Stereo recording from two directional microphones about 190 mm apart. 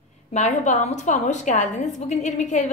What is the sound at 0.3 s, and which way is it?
A woman's voice, 35° left (ahead or behind).